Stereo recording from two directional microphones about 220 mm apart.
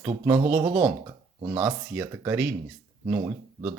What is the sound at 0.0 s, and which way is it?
Speech, 10° right (ahead or behind).